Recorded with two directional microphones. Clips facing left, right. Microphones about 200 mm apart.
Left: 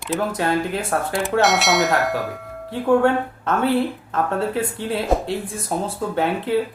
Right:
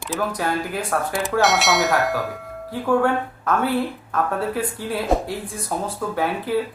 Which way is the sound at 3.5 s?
25° left (ahead or behind).